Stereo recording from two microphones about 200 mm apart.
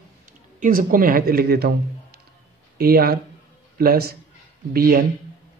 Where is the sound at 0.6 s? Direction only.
45° right (ahead or behind).